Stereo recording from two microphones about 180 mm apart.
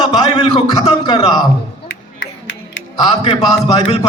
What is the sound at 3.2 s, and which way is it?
Speech, 30° left (ahead or behind).